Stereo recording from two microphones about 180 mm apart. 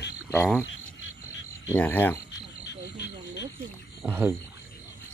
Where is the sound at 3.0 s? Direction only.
70° left (ahead or behind).